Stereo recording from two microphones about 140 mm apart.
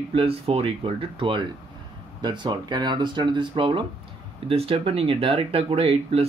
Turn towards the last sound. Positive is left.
turn(degrees=-45)  # may be behind; listen again after turning